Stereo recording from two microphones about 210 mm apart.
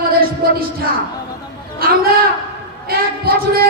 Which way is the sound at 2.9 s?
45° right (ahead or behind).